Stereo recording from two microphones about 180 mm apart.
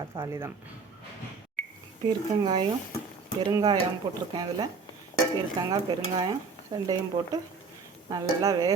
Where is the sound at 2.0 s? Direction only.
25° right (ahead or behind).